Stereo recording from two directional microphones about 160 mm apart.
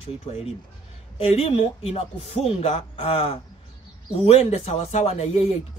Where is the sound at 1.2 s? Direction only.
40° left (ahead or behind).